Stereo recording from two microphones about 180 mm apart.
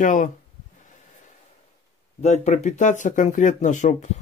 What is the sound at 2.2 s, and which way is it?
Speech, 40° left (ahead or behind).